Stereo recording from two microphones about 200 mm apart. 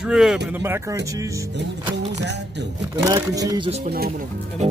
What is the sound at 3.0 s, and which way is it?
Speech, 20° right (ahead or behind).